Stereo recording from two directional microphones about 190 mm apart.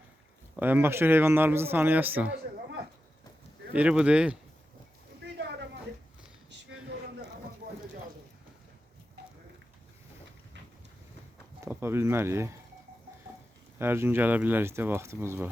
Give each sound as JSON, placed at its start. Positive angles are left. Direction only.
{"t": 0.5, "sound": "a man's voice", "side_deg": -10}
{"t": 3.7, "sound": "speech", "side_deg": -5}
{"t": 11.6, "sound": "a man's voice", "side_deg": -15}
{"t": 13.7, "sound": "a man's voice", "side_deg": -10}